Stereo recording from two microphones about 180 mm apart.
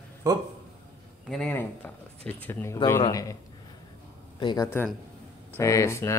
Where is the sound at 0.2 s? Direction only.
20° right (ahead or behind).